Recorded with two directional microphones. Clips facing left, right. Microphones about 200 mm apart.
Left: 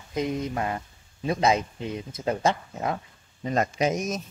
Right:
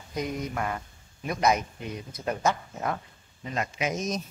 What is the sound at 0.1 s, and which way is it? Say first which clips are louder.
Speech: left 4 dB; 25° left (ahead or behind).